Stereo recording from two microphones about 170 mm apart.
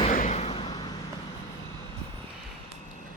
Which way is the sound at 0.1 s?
45° left (ahead or behind).